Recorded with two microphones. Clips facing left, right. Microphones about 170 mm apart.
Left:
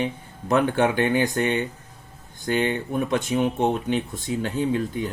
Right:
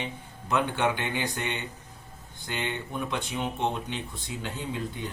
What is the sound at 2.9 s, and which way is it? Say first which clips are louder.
Speech: left 9 dB; 45° left (ahead or behind).